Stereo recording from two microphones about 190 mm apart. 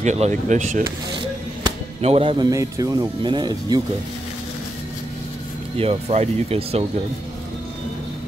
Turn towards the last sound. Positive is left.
turn(degrees=-30)  # may be behind; listen again after turning